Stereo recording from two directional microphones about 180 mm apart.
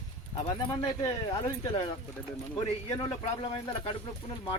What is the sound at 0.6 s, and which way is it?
Speech, 25° left (ahead or behind).